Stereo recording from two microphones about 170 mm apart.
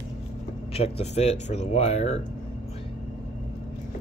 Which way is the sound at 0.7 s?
35° left (ahead or behind).